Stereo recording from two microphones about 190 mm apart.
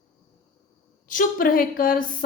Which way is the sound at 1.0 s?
45° left (ahead or behind).